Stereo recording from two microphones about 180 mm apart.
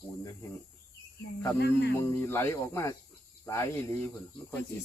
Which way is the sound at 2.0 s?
15° left (ahead or behind).